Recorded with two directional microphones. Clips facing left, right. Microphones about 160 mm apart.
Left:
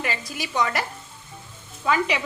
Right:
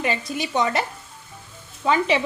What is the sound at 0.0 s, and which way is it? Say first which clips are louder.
A woman's voice: right 5 dB; 25° right (ahead or behind).